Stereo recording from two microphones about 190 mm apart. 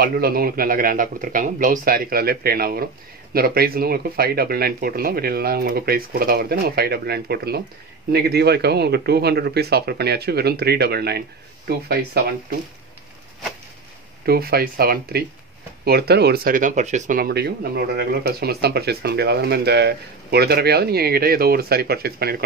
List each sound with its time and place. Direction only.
0.0 s speech: 50° right (ahead or behind)
14.2 s speech: 55° right (ahead or behind)